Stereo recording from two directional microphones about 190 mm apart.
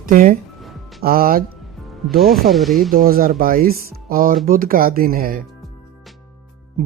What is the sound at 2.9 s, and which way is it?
Speech, 50° right (ahead or behind).